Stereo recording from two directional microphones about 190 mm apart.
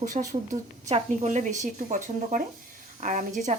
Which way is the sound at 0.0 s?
40° right (ahead or behind).